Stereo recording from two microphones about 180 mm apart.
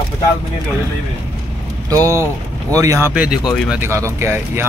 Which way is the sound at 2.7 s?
15° right (ahead or behind).